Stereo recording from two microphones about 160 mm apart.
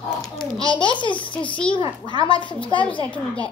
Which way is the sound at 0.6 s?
30° left (ahead or behind).